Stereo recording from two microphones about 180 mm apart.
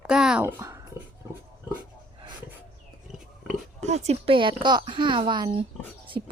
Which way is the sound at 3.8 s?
35° right (ahead or behind).